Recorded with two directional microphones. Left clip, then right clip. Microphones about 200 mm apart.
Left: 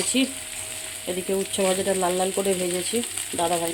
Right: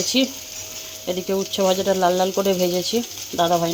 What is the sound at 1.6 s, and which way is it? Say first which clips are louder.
Speech: right 6 dB; 15° right (ahead or behind).